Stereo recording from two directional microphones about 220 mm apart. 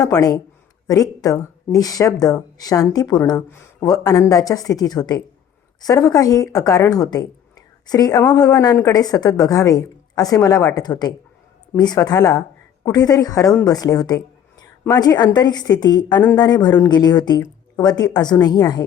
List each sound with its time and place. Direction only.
0.0 s a woman's voice: 15° left (ahead or behind)